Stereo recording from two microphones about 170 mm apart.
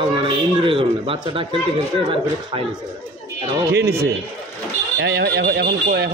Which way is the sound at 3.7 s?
65° right (ahead or behind).